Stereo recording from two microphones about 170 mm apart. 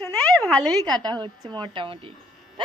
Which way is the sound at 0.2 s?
5° left (ahead or behind).